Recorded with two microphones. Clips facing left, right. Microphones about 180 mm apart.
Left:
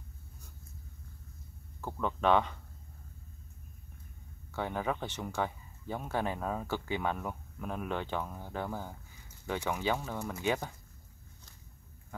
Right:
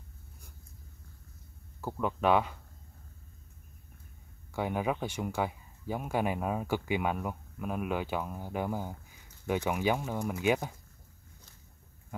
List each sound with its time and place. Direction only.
1.8 s speech: 10° right (ahead or behind)
4.5 s speech: 10° right (ahead or behind)